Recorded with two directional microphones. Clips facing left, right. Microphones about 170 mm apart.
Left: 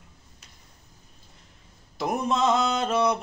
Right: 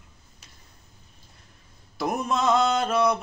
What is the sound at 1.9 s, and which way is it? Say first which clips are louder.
Mantra: even; 20° left (ahead or behind).